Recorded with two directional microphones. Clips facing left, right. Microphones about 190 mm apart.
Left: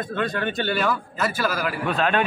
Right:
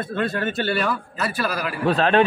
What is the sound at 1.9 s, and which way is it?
Speech, 35° right (ahead or behind).